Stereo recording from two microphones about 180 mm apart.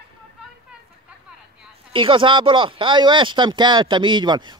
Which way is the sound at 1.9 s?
30° right (ahead or behind).